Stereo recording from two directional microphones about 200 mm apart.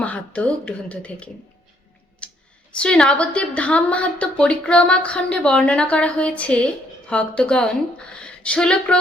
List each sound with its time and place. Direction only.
0.0 s speech: 5° left (ahead or behind)
2.2 s clicking: 5° left (ahead or behind)
2.7 s a woman's voice: 5° left (ahead or behind)